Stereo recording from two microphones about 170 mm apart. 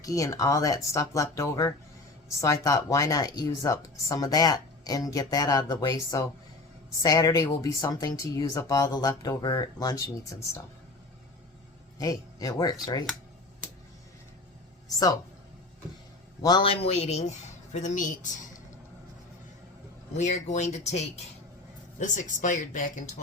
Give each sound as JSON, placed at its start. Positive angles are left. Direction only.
{"t": 0.0, "sound": "speech", "side_deg": 20}
{"t": 11.9, "sound": "speech", "side_deg": 20}
{"t": 14.8, "sound": "speech", "side_deg": 20}
{"t": 16.4, "sound": "a man's voice", "side_deg": 25}
{"t": 20.1, "sound": "speech", "side_deg": 45}